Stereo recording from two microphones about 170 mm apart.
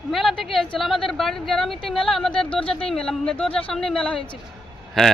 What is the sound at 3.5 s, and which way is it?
Speech, 30° left (ahead or behind).